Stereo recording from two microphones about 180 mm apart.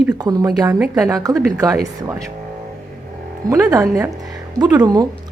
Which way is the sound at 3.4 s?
20° right (ahead or behind).